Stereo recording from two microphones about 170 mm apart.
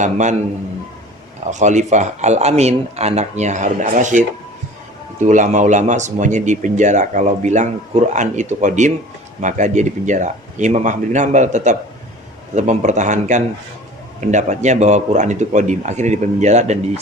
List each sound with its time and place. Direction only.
0.0 s speech: 45° right (ahead or behind)
1.5 s speech: 45° right (ahead or behind)